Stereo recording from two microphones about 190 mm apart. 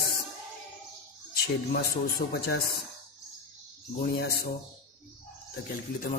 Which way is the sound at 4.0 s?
60° left (ahead or behind).